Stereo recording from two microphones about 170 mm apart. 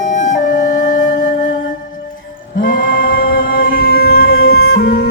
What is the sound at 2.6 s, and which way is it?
Music, 55° left (ahead or behind).